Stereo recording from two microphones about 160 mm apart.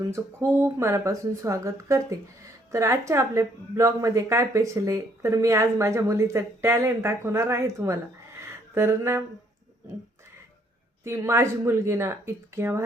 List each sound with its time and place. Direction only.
0.1 s speech: 15° right (ahead or behind)
11.0 s speech: 15° right (ahead or behind)